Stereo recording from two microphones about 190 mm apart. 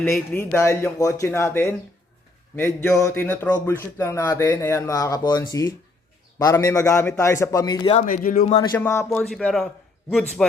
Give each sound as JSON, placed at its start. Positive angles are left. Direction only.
{"t": 0.0, "sound": "speech", "side_deg": 10}
{"t": 7.9, "sound": "speech", "side_deg": 45}
{"t": 8.4, "sound": "speech", "side_deg": 20}
{"t": 9.0, "sound": "a man's voice", "side_deg": 5}